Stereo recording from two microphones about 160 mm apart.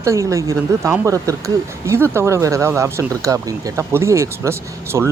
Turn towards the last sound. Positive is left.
turn(degrees=-15)  # may be behind; listen again after turning